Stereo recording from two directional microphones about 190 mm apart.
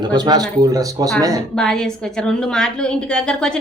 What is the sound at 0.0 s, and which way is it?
Speech, 20° right (ahead or behind).